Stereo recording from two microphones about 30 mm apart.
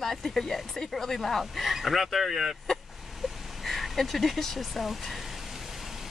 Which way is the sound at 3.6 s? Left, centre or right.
Centre.